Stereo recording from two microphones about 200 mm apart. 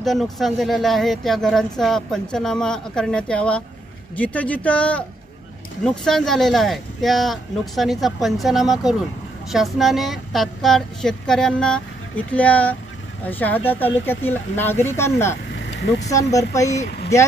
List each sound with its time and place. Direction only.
0.0 s speech: centre (ahead or behind); by 16.8 s 15° left (ahead or behind)